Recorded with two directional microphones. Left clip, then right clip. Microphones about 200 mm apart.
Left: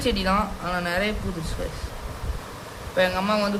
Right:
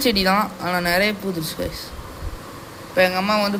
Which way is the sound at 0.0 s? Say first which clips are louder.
Right 5 dB; 20° right (ahead or behind).